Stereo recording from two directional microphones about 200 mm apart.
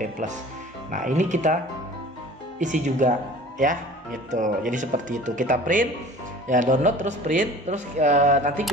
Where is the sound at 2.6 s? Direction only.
40° right (ahead or behind).